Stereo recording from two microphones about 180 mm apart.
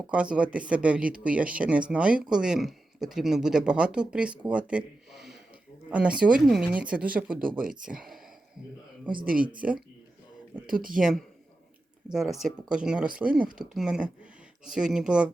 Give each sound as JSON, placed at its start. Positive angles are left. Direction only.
{"t": 0.1, "sound": "speech", "side_deg": -5}
{"t": 9.6, "sound": "speech", "side_deg": -5}
{"t": 10.7, "sound": "speech", "side_deg": -50}
{"t": 10.9, "sound": "speech", "side_deg": 0}